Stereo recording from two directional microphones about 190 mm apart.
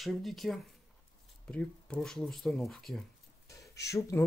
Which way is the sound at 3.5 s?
15° left (ahead or behind).